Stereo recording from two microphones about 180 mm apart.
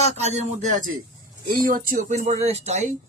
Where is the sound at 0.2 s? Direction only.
35° right (ahead or behind).